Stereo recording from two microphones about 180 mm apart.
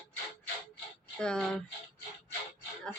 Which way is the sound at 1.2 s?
5° left (ahead or behind).